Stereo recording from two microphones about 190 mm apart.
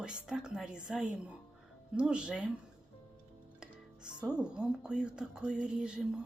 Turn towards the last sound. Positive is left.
turn(degrees=-5)  # may be behind; listen again after turning